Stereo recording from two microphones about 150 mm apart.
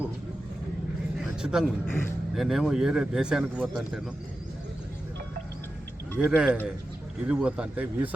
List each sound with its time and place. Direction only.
1.2 s a sound: 5° right (ahead or behind)
1.9 s speech: 15° left (ahead or behind)
2.3 s speech: centre (ahead or behind)
6.1 s speech: 5° right (ahead or behind)